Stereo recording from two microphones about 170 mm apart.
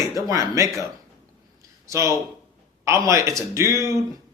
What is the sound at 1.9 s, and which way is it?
Speech, 15° right (ahead or behind).